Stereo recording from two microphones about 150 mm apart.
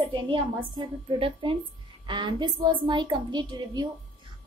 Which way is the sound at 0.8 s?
35° right (ahead or behind).